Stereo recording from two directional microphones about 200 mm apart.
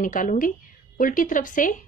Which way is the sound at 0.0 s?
40° left (ahead or behind).